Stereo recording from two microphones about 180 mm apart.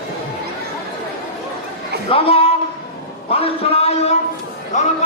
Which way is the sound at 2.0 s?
30° left (ahead or behind).